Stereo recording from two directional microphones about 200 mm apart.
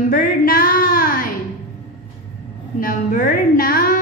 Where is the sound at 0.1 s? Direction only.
45° left (ahead or behind).